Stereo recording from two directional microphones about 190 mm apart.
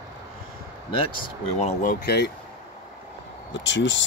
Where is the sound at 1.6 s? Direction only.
40° left (ahead or behind).